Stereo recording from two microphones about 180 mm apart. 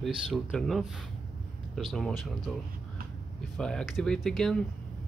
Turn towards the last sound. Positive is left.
turn(degrees=0)  # may be behind; listen again after turning